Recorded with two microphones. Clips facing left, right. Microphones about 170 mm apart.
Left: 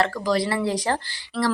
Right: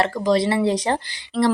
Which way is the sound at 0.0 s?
20° right (ahead or behind).